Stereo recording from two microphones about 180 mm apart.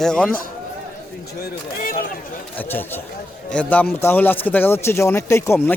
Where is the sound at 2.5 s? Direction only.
10° left (ahead or behind).